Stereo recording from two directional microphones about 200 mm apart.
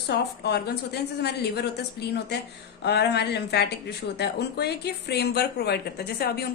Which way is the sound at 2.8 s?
55° left (ahead or behind).